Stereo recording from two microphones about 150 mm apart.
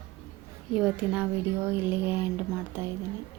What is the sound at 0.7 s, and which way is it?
Speech, 5° right (ahead or behind).